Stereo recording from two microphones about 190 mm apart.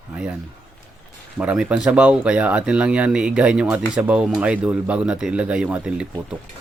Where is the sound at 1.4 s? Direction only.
5° right (ahead or behind).